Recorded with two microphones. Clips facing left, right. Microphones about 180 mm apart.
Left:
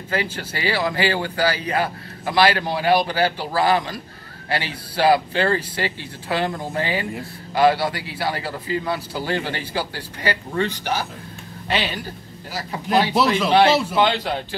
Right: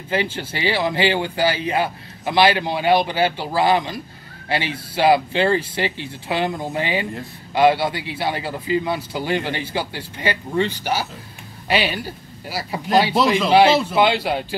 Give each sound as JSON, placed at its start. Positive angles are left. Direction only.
{"t": 0.1, "sound": "speech", "side_deg": -25}
{"t": 11.7, "sound": "speech", "side_deg": -10}